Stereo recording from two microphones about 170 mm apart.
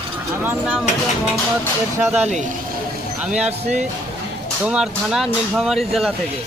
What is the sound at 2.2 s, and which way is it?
Speech, 40° right (ahead or behind).